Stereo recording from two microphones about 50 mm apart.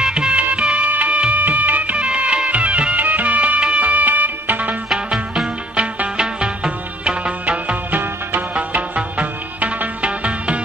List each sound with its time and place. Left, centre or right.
0.0 s music: centre; by 2.0 s right
2.0 s music: right
4.9 s music: centre; by 8.0 s right
8.0 s music: right
8.5 s music: right